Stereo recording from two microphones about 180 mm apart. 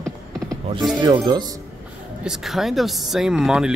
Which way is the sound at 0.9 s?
20° right (ahead or behind).